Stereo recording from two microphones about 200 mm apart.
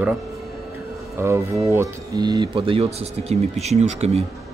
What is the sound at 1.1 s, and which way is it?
Speech, 15° right (ahead or behind).